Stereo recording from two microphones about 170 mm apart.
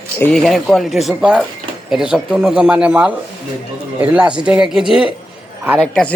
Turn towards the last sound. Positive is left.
turn(degrees=5)  # may be behind; listen again after turning